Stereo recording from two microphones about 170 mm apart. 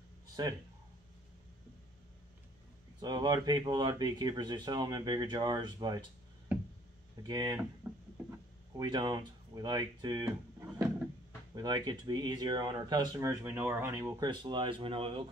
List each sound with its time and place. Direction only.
0.4 s speech: 25° right (ahead or behind)
3.0 s speech: 25° right (ahead or behind)
7.2 s speech: 25° right (ahead or behind)
7.8 s a sound: 5° right (ahead or behind)
8.7 s speech: 25° right (ahead or behind)
11.5 s speech: 25° right (ahead or behind)